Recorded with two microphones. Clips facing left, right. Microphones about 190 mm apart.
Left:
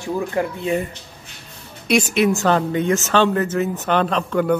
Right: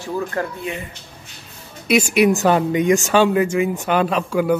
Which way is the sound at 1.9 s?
10° right (ahead or behind).